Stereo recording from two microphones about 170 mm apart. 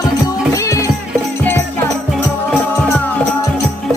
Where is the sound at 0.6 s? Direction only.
20° left (ahead or behind).